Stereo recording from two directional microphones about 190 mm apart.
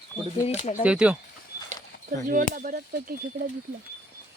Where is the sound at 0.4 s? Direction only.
35° left (ahead or behind).